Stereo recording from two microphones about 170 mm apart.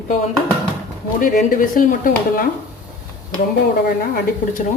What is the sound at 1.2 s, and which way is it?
Speech, 55° left (ahead or behind).